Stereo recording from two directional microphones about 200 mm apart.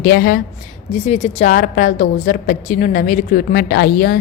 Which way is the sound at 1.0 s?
30° left (ahead or behind).